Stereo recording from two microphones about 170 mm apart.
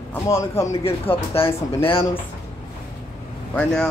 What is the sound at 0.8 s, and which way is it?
Speech, 35° left (ahead or behind).